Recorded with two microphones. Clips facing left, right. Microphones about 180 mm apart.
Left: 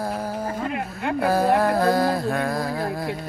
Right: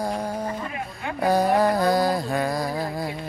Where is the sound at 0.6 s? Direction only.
65° left (ahead or behind).